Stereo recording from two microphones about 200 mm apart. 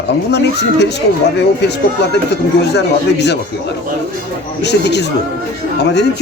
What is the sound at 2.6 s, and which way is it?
Speech, 60° left (ahead or behind).